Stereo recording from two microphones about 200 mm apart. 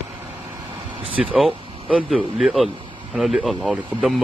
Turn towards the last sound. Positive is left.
turn(degrees=-5)  # may be behind; listen again after turning